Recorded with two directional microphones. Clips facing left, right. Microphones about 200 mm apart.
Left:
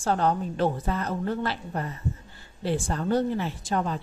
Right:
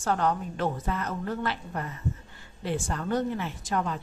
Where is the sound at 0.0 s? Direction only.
30° left (ahead or behind).